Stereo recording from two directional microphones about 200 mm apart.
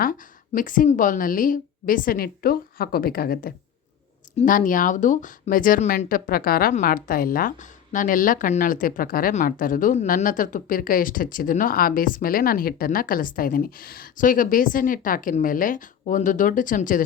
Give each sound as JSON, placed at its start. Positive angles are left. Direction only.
{"t": 0.0, "sound": "speech", "side_deg": 45}